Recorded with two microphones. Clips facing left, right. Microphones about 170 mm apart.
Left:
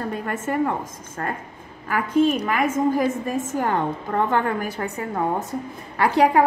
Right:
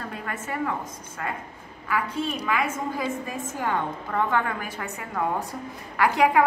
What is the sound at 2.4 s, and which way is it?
A woman's voice, 50° left (ahead or behind).